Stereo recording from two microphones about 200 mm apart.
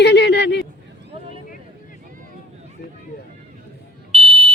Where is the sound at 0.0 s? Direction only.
60° left (ahead or behind).